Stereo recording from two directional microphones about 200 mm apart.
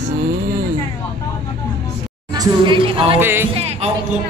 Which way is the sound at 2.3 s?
20° right (ahead or behind).